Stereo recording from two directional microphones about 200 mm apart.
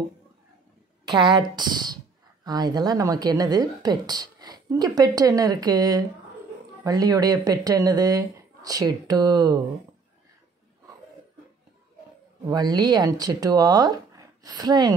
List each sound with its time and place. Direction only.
1.0 s speech: 20° right (ahead or behind)
12.4 s speech: 20° right (ahead or behind)